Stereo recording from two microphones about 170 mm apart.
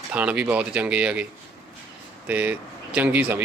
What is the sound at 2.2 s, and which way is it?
Speech, 10° right (ahead or behind).